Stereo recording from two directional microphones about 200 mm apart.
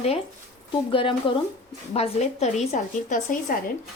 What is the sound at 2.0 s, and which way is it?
A woman's voice, 30° left (ahead or behind).